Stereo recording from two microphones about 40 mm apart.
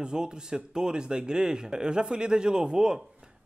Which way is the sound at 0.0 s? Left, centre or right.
Right.